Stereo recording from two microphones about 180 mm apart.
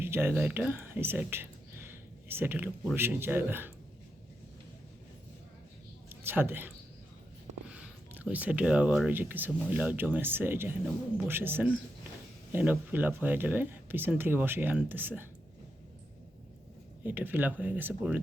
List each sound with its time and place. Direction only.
0.0 s speech: 15° right (ahead or behind)
6.1 s speech: 10° right (ahead or behind)
8.2 s speech: 10° right (ahead or behind)
17.0 s speech: 10° right (ahead or behind)